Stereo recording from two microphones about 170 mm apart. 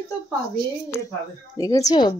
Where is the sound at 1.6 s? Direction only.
20° left (ahead or behind).